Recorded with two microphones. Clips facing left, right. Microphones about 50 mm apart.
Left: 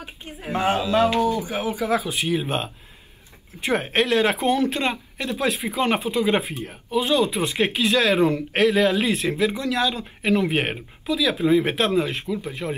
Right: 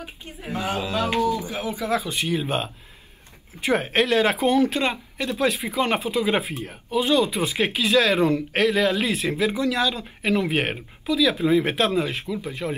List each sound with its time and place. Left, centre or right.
0.2 s speech: left
1.4 s speech: left
1.9 s speech: centre